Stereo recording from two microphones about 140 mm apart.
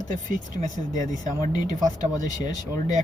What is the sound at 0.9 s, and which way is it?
Speech, 25° left (ahead or behind).